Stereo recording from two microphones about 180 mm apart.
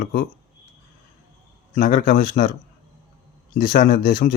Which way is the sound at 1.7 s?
45° left (ahead or behind).